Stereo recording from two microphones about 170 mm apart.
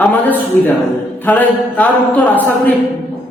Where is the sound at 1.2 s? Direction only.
10° left (ahead or behind).